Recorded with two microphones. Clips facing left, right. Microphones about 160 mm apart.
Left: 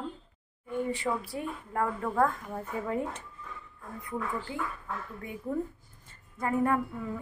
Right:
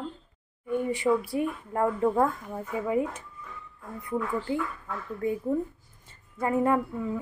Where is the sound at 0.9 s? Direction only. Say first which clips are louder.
Right 7 dB; 15° right (ahead or behind).